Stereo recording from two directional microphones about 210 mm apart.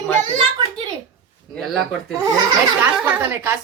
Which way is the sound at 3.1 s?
10° right (ahead or behind).